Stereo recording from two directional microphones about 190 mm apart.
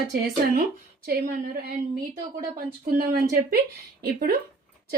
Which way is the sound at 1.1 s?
55° right (ahead or behind).